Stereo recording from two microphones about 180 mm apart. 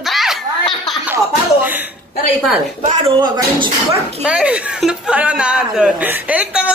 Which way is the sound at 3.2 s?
20° right (ahead or behind).